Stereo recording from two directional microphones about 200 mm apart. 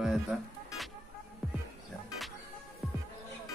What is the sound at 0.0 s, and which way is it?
Music, centre (ahead or behind).